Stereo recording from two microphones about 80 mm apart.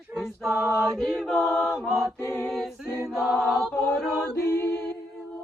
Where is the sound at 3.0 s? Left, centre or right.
Centre.